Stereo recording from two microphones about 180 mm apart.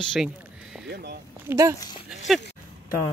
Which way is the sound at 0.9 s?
60° right (ahead or behind).